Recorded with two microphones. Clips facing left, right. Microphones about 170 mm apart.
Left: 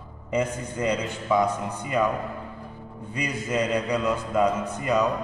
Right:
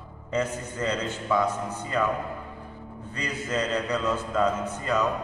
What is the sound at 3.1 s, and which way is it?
A man's voice, 15° left (ahead or behind).